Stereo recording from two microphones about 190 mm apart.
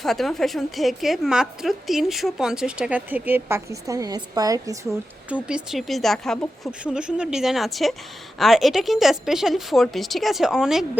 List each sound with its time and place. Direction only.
0.0 s a woman's voice: centre (ahead or behind); by 4.9 s 15° right (ahead or behind)
5.3 s a woman's voice: 5° right (ahead or behind)